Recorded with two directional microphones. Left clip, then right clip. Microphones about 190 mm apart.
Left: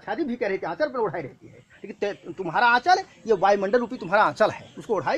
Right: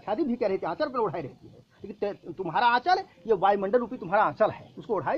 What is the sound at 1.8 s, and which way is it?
Speech, 35° left (ahead or behind).